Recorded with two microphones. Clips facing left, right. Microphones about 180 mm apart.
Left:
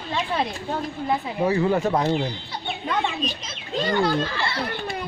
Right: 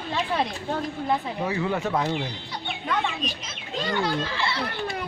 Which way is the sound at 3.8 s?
40° left (ahead or behind).